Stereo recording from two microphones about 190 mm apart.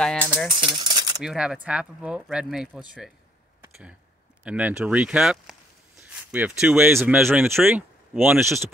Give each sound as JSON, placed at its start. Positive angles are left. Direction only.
{"t": 0.0, "sound": "speech", "side_deg": 5}
{"t": 0.5, "sound": "speech", "side_deg": -25}
{"t": 1.2, "sound": "speech", "side_deg": -5}
{"t": 4.5, "sound": "speech", "side_deg": -5}